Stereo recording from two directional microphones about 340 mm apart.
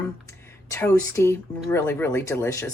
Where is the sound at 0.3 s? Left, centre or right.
Centre.